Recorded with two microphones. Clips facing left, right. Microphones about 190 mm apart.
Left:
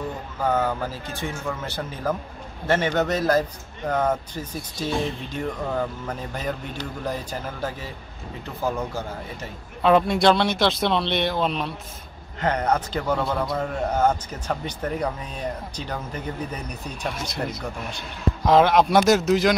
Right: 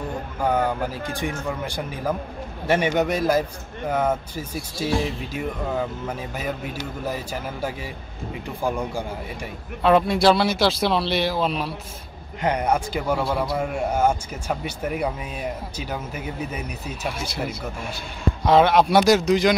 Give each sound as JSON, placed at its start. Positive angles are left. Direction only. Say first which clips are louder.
{"t": 0.4, "sound": "a man's voice", "louder": "right 1 dB", "side_deg": -15}
{"t": 9.8, "sound": "a man's voice", "louder": "right 1 dB", "side_deg": 0}